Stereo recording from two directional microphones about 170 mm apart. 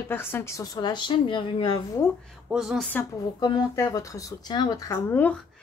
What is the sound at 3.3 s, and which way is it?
A woman's voice, 25° left (ahead or behind).